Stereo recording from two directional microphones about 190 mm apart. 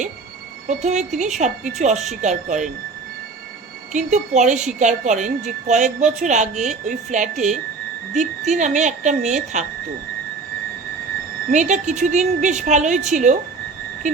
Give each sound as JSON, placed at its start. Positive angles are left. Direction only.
{"t": 0.7, "sound": "a woman's voice", "side_deg": -40}
{"t": 3.9, "sound": "a woman's voice", "side_deg": -40}
{"t": 11.5, "sound": "a woman's voice", "side_deg": -40}